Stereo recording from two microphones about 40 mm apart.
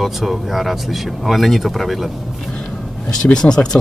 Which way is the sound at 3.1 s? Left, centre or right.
Centre.